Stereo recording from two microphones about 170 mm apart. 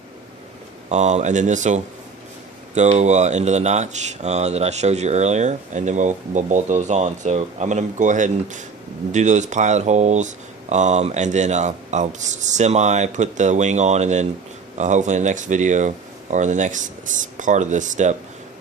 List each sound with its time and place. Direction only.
0.9 s speech: 45° right (ahead or behind)